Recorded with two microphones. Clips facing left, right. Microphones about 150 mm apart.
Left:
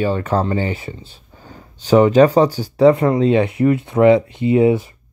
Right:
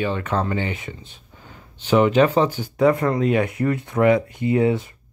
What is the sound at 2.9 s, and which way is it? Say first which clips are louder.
Speech: left 5 dB; 20° left (ahead or behind).